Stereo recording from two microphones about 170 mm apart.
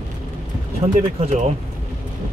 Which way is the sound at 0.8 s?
35° right (ahead or behind).